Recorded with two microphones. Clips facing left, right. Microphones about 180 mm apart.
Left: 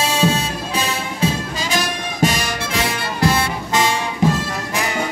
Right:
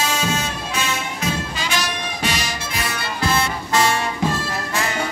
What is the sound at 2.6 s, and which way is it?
Music, 85° left.